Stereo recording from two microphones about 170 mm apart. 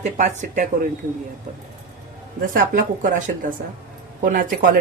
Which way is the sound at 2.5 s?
55° right (ahead or behind).